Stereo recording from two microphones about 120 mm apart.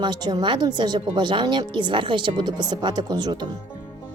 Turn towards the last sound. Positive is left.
turn(degrees=-35)  # may be behind; listen again after turning